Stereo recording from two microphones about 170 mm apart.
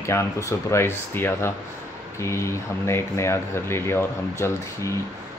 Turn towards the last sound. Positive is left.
turn(degrees=15)  # may be behind; listen again after turning